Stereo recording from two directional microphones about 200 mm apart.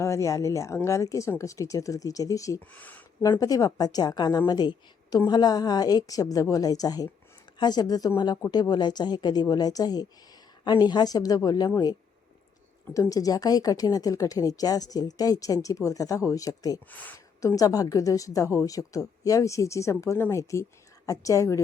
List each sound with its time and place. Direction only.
0.0 s a woman's voice: 15° left (ahead or behind)